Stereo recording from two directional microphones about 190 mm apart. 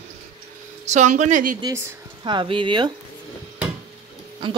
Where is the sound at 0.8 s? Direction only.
40° right (ahead or behind).